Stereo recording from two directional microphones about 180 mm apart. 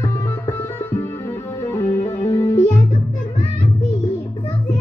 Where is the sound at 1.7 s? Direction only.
15° left (ahead or behind).